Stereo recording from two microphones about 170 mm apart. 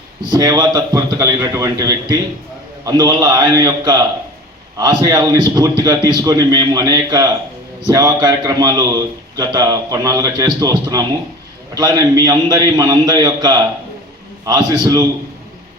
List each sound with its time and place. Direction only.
0.3 s a man's voice: 20° right (ahead or behind)